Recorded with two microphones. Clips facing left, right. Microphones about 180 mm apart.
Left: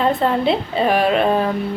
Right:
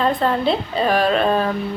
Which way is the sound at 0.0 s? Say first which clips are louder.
Left 1 dB; 20° left (ahead or behind).